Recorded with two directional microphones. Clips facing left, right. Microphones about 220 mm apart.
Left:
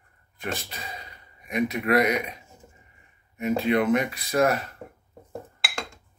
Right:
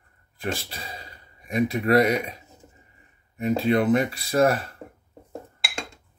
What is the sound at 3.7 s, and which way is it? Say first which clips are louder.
Speech: right 2 dB; 30° right (ahead or behind).